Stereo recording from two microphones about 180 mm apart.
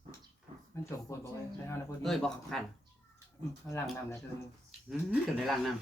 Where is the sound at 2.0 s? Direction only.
Centre (ahead or behind).